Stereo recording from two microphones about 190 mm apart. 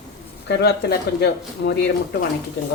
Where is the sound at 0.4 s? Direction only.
60° left (ahead or behind).